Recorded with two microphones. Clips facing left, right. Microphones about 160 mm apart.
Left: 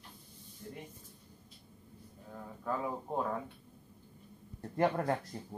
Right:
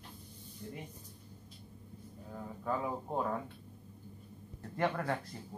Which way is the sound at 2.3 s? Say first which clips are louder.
Right 1 dB; 5° right (ahead or behind).